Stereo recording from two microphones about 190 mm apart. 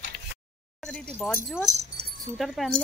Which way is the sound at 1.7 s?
35° right (ahead or behind).